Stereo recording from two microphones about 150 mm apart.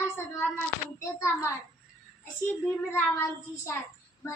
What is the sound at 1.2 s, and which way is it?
Speech, 20° left (ahead or behind).